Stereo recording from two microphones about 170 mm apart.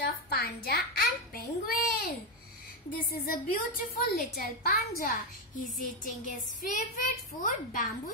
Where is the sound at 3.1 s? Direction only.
60° left (ahead or behind).